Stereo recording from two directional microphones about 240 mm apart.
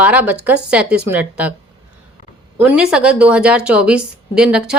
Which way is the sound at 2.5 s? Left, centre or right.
Centre.